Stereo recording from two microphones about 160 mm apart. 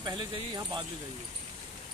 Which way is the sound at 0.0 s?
30° right (ahead or behind).